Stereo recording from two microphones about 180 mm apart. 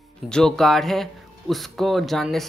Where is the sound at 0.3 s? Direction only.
5° left (ahead or behind).